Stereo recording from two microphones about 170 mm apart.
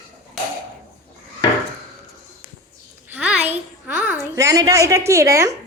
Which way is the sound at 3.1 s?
5° right (ahead or behind).